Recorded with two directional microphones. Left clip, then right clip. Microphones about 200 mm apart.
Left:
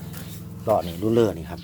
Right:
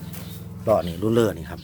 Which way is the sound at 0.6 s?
25° right (ahead or behind).